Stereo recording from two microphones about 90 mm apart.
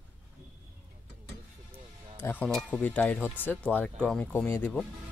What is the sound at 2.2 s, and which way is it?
Speech, 20° left (ahead or behind).